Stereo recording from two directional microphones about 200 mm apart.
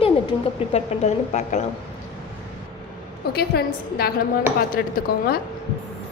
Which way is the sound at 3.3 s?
50° left (ahead or behind).